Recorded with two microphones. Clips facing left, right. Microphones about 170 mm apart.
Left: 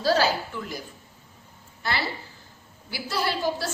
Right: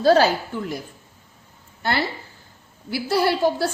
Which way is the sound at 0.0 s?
55° right (ahead or behind).